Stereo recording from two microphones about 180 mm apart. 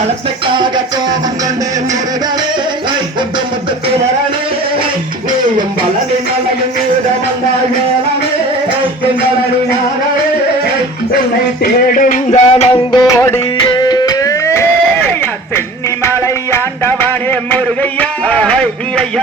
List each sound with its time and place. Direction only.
0.4 s music: 25° right (ahead or behind)
11.6 s music: 50° left (ahead or behind)
12.9 s music: 15° left (ahead or behind)
16.0 s music: 15° left (ahead or behind)
18.0 s a sound: 10° left (ahead or behind)